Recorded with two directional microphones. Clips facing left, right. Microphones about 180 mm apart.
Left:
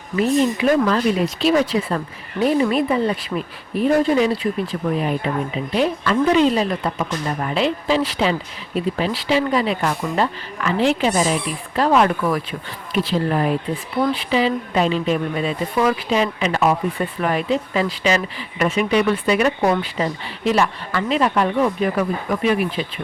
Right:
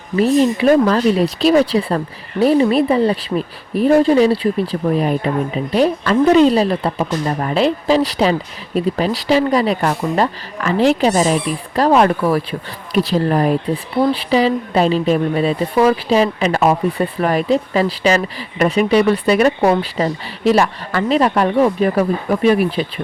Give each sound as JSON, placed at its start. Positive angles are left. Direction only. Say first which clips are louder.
{"t": 0.2, "sound": "speech", "louder": "right 4 dB", "side_deg": -35}